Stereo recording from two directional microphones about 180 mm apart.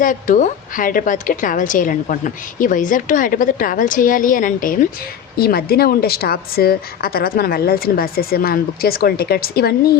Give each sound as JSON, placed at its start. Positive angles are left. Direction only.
{"t": 0.0, "sound": "a woman's voice", "side_deg": 45}